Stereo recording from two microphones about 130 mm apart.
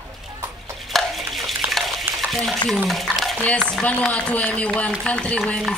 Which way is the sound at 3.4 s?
5° left (ahead or behind).